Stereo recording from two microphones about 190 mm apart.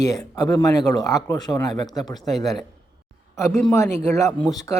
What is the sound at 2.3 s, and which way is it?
Speech, centre (ahead or behind).